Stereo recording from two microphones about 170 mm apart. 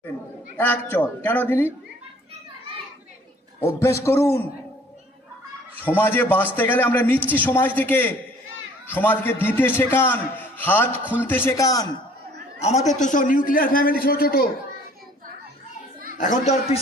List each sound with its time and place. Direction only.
0.5 s a man's voice: 10° left (ahead or behind)
3.7 s a man's voice: 15° left (ahead or behind)
5.8 s a man's voice: 10° left (ahead or behind)
12.6 s a child's voice: 45° left (ahead or behind); by 14.5 s 60° left (ahead or behind)
16.1 s a child's voice: 50° left (ahead or behind)